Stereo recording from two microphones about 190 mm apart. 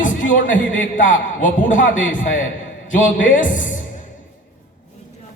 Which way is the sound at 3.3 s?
45° left (ahead or behind).